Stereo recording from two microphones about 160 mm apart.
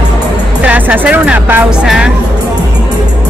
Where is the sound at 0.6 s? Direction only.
10° right (ahead or behind).